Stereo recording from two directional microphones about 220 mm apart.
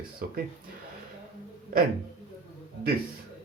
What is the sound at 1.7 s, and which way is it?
Speech, 40° right (ahead or behind).